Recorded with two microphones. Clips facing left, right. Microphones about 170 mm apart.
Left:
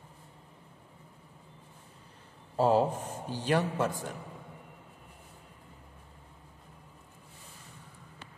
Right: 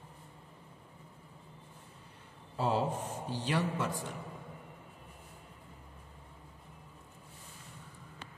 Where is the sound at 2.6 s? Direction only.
45° left (ahead or behind).